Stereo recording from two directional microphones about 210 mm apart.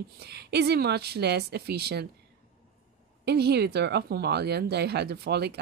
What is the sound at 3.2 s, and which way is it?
Speech, 50° right (ahead or behind).